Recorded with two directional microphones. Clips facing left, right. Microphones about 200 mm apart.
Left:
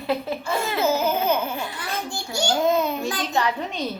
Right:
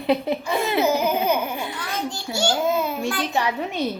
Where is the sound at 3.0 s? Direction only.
20° left (ahead or behind).